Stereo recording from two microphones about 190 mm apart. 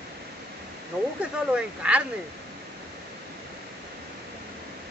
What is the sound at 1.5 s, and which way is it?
Speech, 5° right (ahead or behind).